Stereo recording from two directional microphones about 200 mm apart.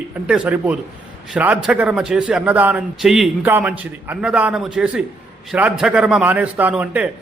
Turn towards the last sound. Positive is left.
turn(degrees=-5)  # may be behind; listen again after turning